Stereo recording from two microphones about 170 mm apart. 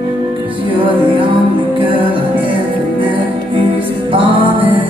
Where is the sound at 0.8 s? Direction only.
30° right (ahead or behind).